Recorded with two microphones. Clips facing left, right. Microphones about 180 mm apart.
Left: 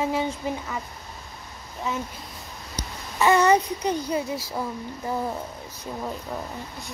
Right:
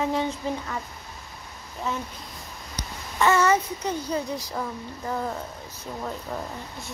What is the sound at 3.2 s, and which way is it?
A child's voice, 15° left (ahead or behind).